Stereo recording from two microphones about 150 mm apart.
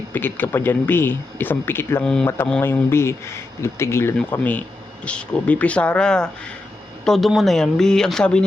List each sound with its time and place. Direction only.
0.1 s speech: 15° left (ahead or behind)